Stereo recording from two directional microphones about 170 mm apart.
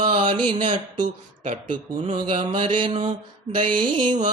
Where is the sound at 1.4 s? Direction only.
50° right (ahead or behind).